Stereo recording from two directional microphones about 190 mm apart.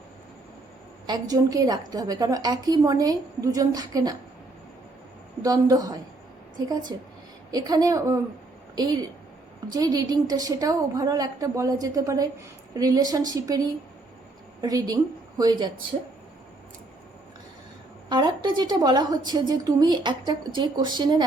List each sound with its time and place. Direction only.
1.0 s a woman's voice: 20° right (ahead or behind)
5.4 s a woman's voice: 20° right (ahead or behind)
14.6 s a woman's voice: 20° right (ahead or behind)
18.1 s a woman's voice: 25° right (ahead or behind)